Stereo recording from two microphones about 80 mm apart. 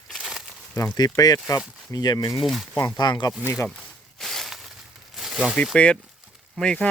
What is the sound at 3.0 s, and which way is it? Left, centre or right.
Speech, left.